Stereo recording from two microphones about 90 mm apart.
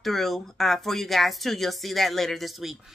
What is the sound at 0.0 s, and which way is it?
Speech, centre (ahead or behind).